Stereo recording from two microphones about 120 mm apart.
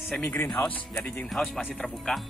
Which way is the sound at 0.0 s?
10° left (ahead or behind).